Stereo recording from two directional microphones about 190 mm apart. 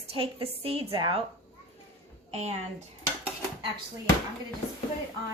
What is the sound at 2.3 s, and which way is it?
Speech, 35° right (ahead or behind).